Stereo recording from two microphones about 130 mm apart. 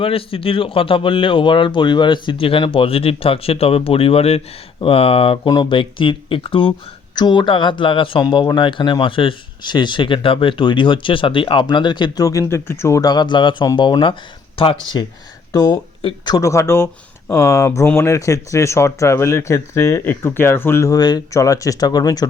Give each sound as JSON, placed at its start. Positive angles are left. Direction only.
{"t": 0.0, "sound": "a man's voice", "side_deg": 45}
{"t": 15.5, "sound": "speech", "side_deg": 25}
{"t": 16.0, "sound": "speech", "side_deg": 35}